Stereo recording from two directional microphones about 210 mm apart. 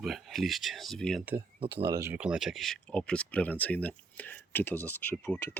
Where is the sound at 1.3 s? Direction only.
25° right (ahead or behind).